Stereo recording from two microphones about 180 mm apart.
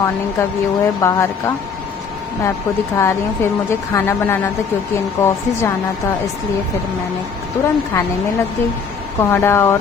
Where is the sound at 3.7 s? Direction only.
15° left (ahead or behind).